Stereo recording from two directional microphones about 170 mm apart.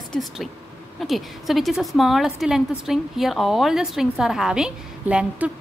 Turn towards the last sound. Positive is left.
turn(degrees=-5)  # may be behind; listen again after turning